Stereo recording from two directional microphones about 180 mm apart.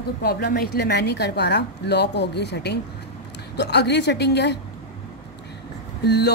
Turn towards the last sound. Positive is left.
turn(degrees=65)  # may be behind; listen again after turning